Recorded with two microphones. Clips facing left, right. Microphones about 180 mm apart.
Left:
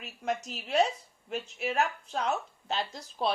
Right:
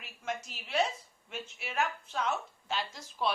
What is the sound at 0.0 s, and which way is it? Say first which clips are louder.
Speech: left 5 dB; 40° left (ahead or behind).